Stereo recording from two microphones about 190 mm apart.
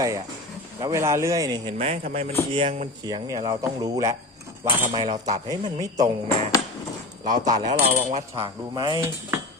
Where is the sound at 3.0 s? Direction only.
20° right (ahead or behind).